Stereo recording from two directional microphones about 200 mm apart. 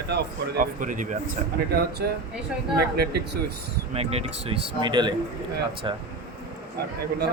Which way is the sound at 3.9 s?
30° right (ahead or behind).